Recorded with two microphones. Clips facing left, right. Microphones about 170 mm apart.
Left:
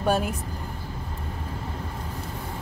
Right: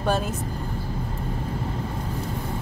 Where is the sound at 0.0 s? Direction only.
10° left (ahead or behind).